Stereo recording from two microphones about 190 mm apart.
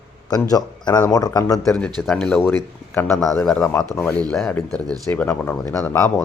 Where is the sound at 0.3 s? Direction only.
20° left (ahead or behind).